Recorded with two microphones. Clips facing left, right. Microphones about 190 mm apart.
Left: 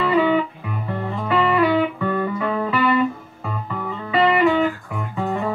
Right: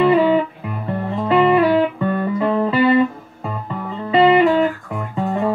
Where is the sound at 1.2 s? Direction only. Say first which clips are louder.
Right 5 dB; 25° right (ahead or behind).